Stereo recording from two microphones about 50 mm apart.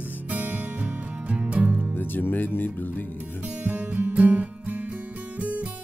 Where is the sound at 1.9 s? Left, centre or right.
Left.